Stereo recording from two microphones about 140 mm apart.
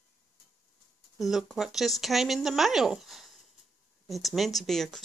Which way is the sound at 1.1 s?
Centre (ahead or behind).